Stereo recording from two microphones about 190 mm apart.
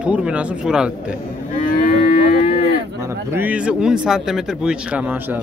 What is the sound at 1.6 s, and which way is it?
Livestock, 50° left (ahead or behind).